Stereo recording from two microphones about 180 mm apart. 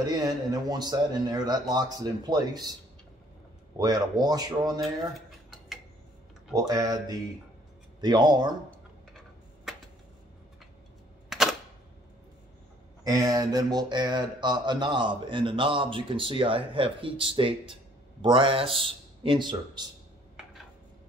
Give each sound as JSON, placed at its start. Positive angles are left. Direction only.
{"t": 0.1, "sound": "speech", "side_deg": -20}
{"t": 3.7, "sound": "speech", "side_deg": -20}
{"t": 6.5, "sound": "speech", "side_deg": -20}
{"t": 11.2, "sound": "camera", "side_deg": 0}
{"t": 13.0, "sound": "a man's voice", "side_deg": -20}